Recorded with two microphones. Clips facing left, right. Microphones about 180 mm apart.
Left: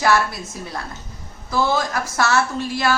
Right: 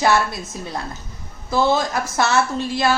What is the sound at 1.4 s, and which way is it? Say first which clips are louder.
A woman's voice: right 2 dB; 25° right (ahead or behind).